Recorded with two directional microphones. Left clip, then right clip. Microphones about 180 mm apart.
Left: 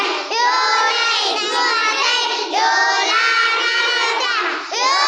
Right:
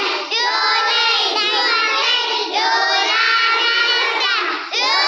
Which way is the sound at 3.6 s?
30° left (ahead or behind).